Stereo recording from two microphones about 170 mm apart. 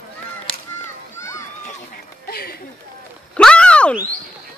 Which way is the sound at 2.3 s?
65° left (ahead or behind).